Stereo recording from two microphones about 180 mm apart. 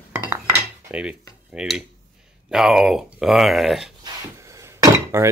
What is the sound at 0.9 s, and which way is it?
Cutlery, 5° right (ahead or behind).